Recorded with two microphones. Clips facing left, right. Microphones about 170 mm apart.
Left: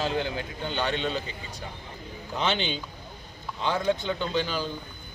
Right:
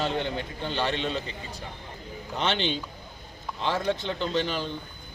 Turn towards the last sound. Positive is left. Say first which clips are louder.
# even
turn(degrees=0)  # may be behind; listen again after turning